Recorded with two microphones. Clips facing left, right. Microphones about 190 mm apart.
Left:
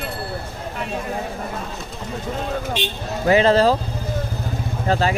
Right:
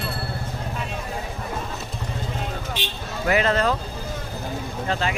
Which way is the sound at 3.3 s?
30° left (ahead or behind).